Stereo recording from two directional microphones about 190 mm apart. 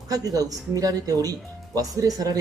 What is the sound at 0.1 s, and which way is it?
Speech, 20° right (ahead or behind).